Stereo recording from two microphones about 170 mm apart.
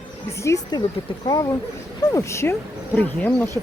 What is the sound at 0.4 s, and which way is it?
Speech, 20° left (ahead or behind).